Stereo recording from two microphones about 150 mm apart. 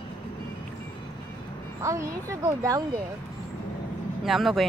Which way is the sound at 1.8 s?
20° right (ahead or behind).